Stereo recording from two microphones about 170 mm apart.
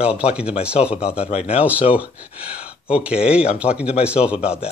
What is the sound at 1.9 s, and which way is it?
Speech, 10° right (ahead or behind).